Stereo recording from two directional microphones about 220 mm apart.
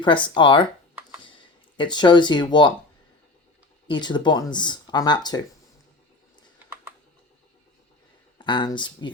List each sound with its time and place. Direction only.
0.0 s speech: 20° left (ahead or behind)
3.8 s speech: 20° left (ahead or behind)
8.4 s speech: 20° left (ahead or behind)